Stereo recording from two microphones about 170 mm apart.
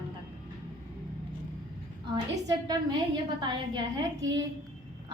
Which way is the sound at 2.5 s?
25° right (ahead or behind).